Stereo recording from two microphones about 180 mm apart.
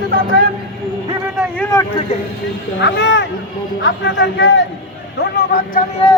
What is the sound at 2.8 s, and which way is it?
A man's voice, 75° left (ahead or behind).